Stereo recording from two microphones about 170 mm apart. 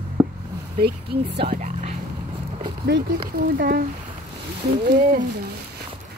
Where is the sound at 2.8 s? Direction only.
70° right (ahead or behind).